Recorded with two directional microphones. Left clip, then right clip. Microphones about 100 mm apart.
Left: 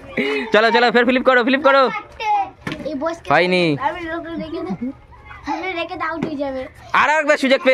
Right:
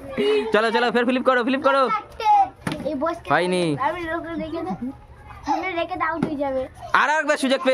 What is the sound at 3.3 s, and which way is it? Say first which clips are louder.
Speech: left 6 dB; 45° left (ahead or behind).